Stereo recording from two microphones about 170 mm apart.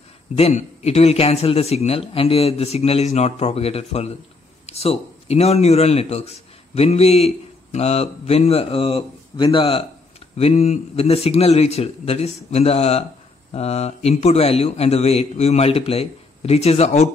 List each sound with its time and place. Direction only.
0.4 s a man's voice: 40° left (ahead or behind)